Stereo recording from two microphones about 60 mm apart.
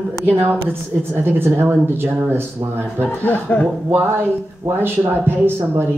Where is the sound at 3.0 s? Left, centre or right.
Left.